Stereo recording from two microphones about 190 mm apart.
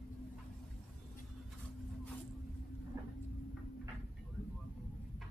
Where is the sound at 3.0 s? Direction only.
15° right (ahead or behind).